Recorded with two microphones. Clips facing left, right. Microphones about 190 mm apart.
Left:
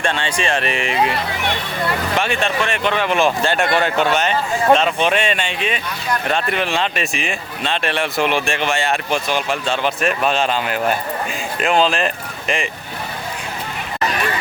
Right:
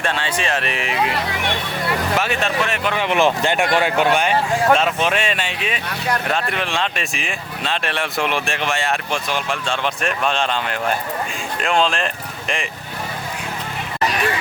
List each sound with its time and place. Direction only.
0.0 s speech: 5° right (ahead or behind)
2.1 s speech: 5° right (ahead or behind)
3.0 s speech: 20° right (ahead or behind); by 12.6 s centre (ahead or behind)